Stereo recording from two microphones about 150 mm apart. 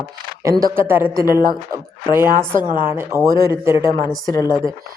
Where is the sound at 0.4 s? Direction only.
25° right (ahead or behind).